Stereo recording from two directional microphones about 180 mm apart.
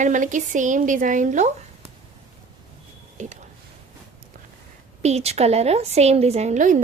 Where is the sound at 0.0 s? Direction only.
45° right (ahead or behind).